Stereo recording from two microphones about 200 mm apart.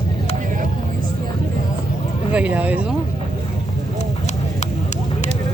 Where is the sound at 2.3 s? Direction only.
5° right (ahead or behind).